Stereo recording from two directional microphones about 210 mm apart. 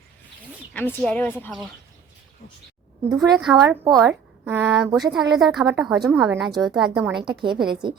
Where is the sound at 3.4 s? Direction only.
Centre (ahead or behind).